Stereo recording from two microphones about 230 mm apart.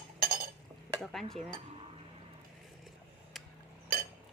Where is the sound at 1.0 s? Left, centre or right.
Centre.